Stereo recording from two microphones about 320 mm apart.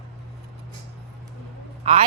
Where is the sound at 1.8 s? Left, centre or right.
Centre.